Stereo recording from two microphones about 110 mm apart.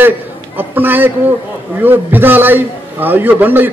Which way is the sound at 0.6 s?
20° right (ahead or behind).